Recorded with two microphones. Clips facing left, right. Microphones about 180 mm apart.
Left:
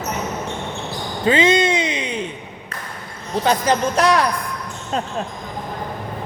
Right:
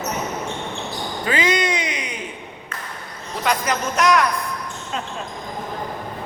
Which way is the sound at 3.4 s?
30° left (ahead or behind).